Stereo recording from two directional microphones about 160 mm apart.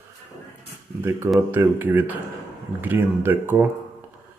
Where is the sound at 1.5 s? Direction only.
15° right (ahead or behind).